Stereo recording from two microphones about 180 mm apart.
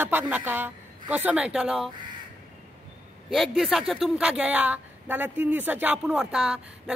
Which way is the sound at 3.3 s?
Centre (ahead or behind).